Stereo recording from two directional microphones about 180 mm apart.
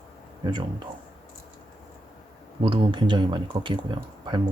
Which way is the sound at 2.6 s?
30° right (ahead or behind).